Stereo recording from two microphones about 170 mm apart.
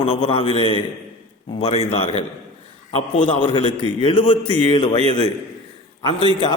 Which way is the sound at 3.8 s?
30° left (ahead or behind).